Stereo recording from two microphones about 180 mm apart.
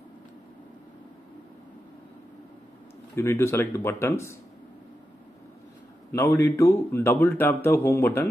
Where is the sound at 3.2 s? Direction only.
15° left (ahead or behind).